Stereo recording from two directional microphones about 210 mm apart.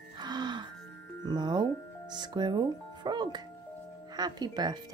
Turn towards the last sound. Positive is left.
turn(degrees=-20)  # may be behind; listen again after turning